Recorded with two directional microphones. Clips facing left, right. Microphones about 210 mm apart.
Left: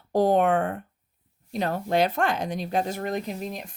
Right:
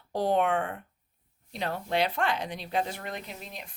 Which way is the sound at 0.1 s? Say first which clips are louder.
Left 5 dB; 45° left (ahead or behind).